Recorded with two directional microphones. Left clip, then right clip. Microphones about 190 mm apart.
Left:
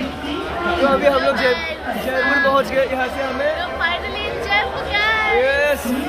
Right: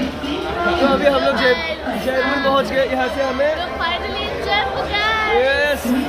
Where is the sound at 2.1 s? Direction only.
15° right (ahead or behind).